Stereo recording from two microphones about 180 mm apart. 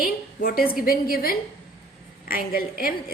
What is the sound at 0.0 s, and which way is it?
A woman's voice, 55° left (ahead or behind).